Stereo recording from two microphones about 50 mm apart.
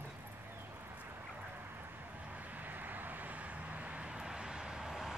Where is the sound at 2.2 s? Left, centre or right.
Right.